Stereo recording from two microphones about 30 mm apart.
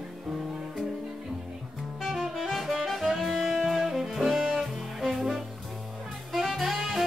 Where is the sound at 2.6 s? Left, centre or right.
Centre.